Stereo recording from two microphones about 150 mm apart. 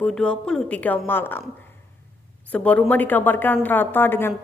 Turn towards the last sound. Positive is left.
turn(degrees=15)  # may be behind; listen again after turning